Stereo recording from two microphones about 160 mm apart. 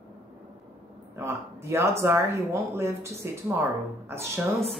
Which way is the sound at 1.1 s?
15° right (ahead or behind).